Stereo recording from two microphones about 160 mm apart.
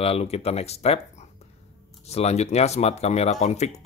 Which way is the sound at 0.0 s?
40° left (ahead or behind).